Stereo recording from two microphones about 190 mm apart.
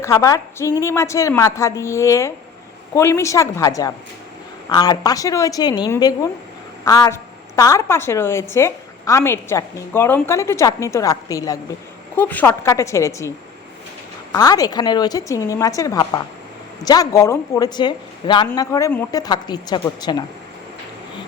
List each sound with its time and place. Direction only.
0.0 s a woman's voice: 15° left (ahead or behind)
14.3 s a woman's voice: 20° left (ahead or behind)